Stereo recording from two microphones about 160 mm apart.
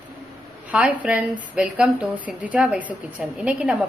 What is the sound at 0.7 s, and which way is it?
Speech, 10° right (ahead or behind).